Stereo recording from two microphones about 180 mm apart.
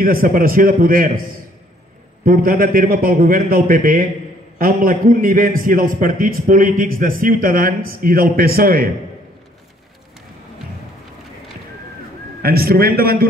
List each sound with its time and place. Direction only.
0.0 s a man's voice: 50° right (ahead or behind)
2.2 s a man's voice: 55° right (ahead or behind)
12.4 s a man's voice: 55° right (ahead or behind)